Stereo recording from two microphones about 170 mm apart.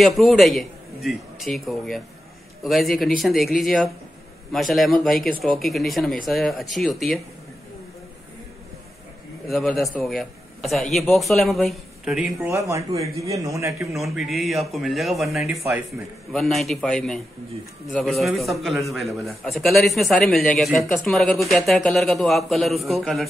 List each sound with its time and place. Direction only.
0.0 s a man's voice: centre (ahead or behind)
9.5 s a man's voice: centre (ahead or behind)
12.5 s a man's voice: 15° right (ahead or behind)
13.9 s a man's voice: centre (ahead or behind)